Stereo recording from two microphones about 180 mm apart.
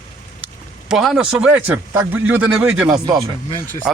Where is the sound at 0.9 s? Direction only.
Centre (ahead or behind).